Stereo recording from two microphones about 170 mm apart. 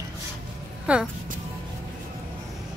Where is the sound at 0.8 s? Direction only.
5° right (ahead or behind).